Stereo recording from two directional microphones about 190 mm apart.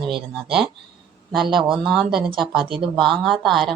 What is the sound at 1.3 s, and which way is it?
Speech, centre (ahead or behind).